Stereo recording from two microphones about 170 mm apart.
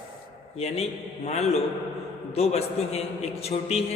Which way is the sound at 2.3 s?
35° left (ahead or behind).